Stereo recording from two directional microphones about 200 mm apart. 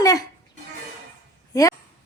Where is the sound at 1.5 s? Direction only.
15° left (ahead or behind).